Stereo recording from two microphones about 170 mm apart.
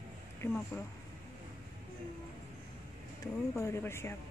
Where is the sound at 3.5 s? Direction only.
15° left (ahead or behind).